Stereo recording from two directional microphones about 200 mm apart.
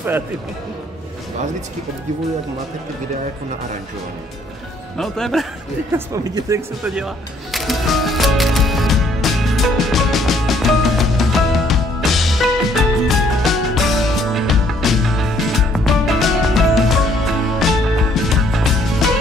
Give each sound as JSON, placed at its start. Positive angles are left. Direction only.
{"t": 4.9, "sound": "speech", "side_deg": 0}
{"t": 5.9, "sound": "speech", "side_deg": -15}
{"t": 6.8, "sound": "speech", "side_deg": 0}
{"t": 7.5, "sound": "music", "side_deg": 0}